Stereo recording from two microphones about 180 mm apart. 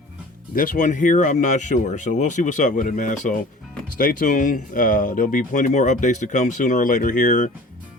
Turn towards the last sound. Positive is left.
turn(degrees=45)  # may be behind; listen again after turning